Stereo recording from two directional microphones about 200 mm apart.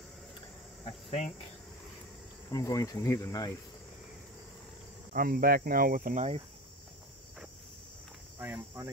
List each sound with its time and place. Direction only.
0.8 s speech: 30° left (ahead or behind)
2.5 s speech: 15° left (ahead or behind)
5.1 s speech: 45° right (ahead or behind)
8.4 s speech: 10° right (ahead or behind)